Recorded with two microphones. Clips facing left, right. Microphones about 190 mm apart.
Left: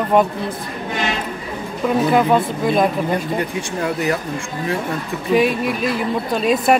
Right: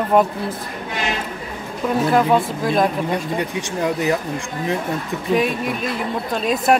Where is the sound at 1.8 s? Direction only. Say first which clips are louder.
Left 1 dB; centre (ahead or behind).